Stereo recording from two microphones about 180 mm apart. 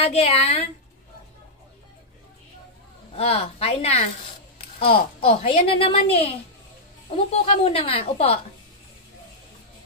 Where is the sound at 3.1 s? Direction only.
35° left (ahead or behind).